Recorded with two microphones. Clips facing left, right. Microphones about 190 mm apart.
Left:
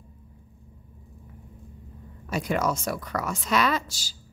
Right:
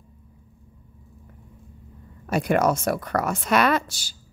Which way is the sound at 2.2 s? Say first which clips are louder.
Right 5 dB; 60° right (ahead or behind).